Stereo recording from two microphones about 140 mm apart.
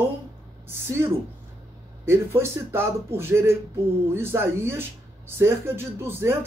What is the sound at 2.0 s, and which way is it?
Speech, 15° right (ahead or behind).